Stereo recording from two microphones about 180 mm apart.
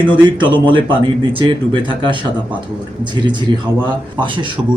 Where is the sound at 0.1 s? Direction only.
25° right (ahead or behind).